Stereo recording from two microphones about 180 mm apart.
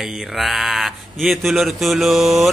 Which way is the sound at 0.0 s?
Centre (ahead or behind).